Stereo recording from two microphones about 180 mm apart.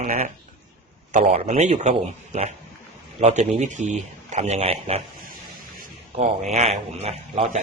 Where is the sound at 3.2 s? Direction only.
40° right (ahead or behind).